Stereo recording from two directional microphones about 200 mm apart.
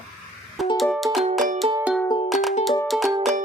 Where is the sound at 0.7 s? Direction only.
Centre (ahead or behind).